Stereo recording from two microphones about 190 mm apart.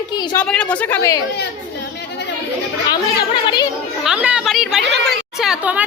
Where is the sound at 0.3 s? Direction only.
5° left (ahead or behind).